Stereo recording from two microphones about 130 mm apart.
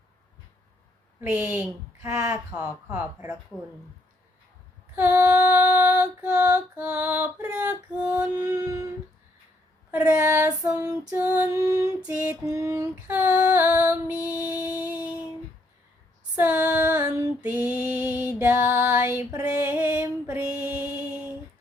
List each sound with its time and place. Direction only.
1.2 s female singing: 15° right (ahead or behind)
2.0 s child singing: 25° right (ahead or behind)
2.3 s female singing: 10° right (ahead or behind)
4.9 s female singing: 15° right (ahead or behind)
8.4 s child singing: 30° right (ahead or behind)
9.9 s child singing: 10° right (ahead or behind)
10.2 s child singing: 20° right (ahead or behind)
11.1 s female singing: 15° right (ahead or behind)
11.4 s child singing: 25° right (ahead or behind)
11.9 s female singing: 10° right (ahead or behind)
12.5 s child singing: 25° right (ahead or behind)
13.1 s female singing: 15° right (ahead or behind)
16.3 s female singing: 10° right (ahead or behind)
19.6 s music: 10° right (ahead or behind)